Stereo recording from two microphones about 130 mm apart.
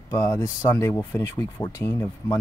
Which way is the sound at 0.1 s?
25° left (ahead or behind).